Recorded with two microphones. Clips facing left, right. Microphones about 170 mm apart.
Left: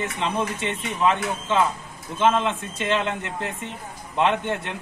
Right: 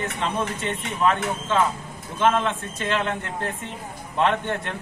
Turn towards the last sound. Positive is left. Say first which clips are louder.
# even
turn(degrees=15)  # may be behind; listen again after turning